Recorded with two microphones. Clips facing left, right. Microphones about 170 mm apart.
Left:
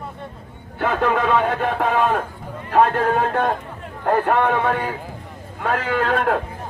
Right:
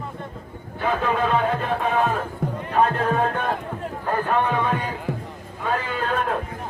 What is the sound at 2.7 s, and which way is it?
Speech, 80° left.